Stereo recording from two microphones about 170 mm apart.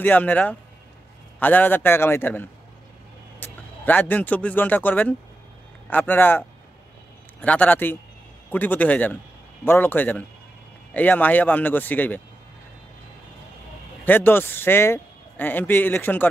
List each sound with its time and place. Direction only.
0.0 s speech: 10° left (ahead or behind)
3.4 s a sound: 10° left (ahead or behind)
3.8 s speech: 10° left (ahead or behind)
7.4 s speech: 10° left (ahead or behind)
14.0 s speech: 10° left (ahead or behind)